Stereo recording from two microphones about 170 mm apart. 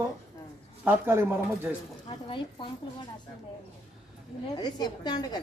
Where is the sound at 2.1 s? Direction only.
30° left (ahead or behind).